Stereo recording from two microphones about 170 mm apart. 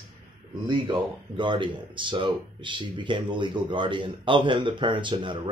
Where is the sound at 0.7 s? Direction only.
25° right (ahead or behind).